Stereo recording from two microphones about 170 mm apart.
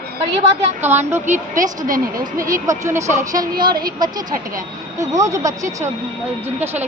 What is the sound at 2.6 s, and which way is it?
Speech, 15° right (ahead or behind).